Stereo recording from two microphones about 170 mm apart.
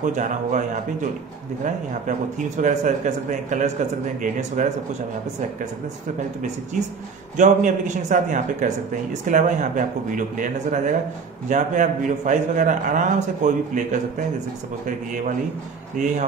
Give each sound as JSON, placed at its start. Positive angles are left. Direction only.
{"t": 0.0, "sound": "a man's voice", "side_deg": -45}
{"t": 7.3, "sound": "a man's voice", "side_deg": -45}